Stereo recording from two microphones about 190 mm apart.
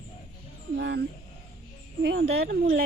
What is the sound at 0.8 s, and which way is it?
Speech, 60° right (ahead or behind).